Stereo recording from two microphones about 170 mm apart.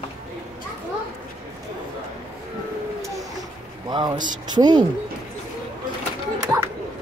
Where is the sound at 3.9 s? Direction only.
25° right (ahead or behind).